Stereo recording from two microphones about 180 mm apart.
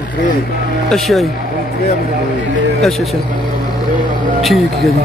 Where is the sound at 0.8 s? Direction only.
Centre (ahead or behind).